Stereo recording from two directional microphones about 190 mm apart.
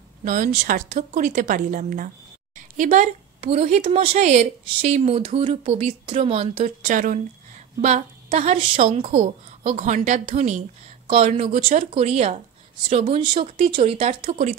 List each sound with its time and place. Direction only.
0.2 s speech: 45° right (ahead or behind)